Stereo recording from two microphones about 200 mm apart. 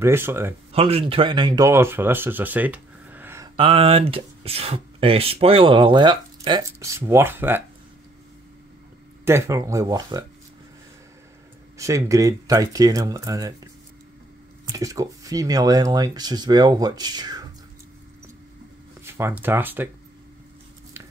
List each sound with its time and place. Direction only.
0.0 s speech: 10° right (ahead or behind)
0.7 s speech: 30° right (ahead or behind); by 3.4 s 10° right (ahead or behind)
3.5 s speech: 30° right (ahead or behind); by 7.6 s 10° right (ahead or behind)
9.2 s speech: 15° right (ahead or behind)
11.8 s speech: 15° right (ahead or behind)
14.7 s speech: 15° right (ahead or behind)
19.0 s speech: 10° right (ahead or behind)